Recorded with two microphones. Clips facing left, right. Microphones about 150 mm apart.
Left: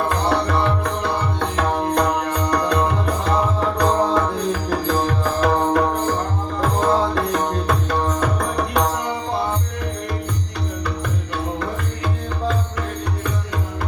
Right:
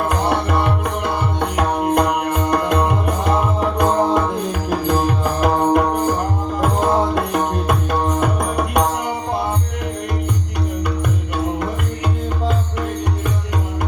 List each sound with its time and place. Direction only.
0.1 s tabla: 15° right (ahead or behind)
4.7 s music: 20° right (ahead or behind)